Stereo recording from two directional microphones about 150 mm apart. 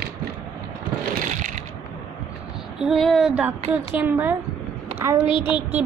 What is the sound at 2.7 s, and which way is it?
Speech, centre (ahead or behind).